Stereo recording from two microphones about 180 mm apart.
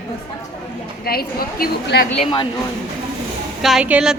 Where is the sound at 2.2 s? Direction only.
30° left (ahead or behind).